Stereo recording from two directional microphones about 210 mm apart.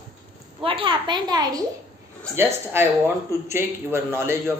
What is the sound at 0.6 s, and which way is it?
A woman's voice, 25° right (ahead or behind).